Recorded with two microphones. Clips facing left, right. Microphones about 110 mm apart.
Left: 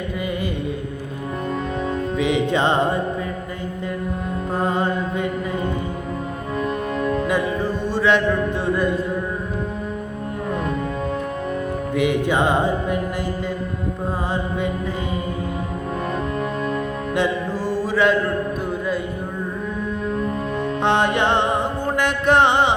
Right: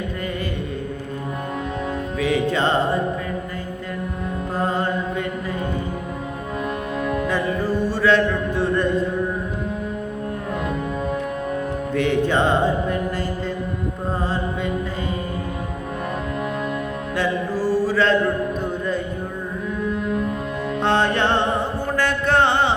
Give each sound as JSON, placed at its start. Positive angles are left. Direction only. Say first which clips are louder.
{"t": 2.1, "sound": "music", "louder": "even", "side_deg": 20}
{"t": 4.5, "sound": "music", "louder": "left 1 dB", "side_deg": 20}
{"t": 7.3, "sound": "music", "louder": "left 1 dB", "side_deg": 15}
{"t": 11.9, "sound": "music", "louder": "even", "side_deg": 15}
{"t": 17.2, "sound": "mantra", "louder": "even", "side_deg": 20}
{"t": 20.8, "sound": "music", "louder": "even", "side_deg": 15}
{"t": 21.9, "sound": "mantra", "louder": "left 2 dB", "side_deg": 15}